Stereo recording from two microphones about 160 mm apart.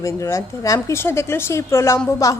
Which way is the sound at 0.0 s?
20° left (ahead or behind).